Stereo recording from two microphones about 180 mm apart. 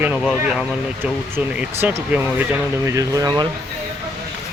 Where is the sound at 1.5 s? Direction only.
10° right (ahead or behind).